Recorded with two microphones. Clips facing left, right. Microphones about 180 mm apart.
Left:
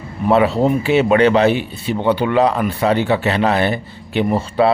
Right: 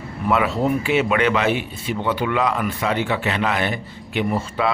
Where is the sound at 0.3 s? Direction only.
30° left (ahead or behind).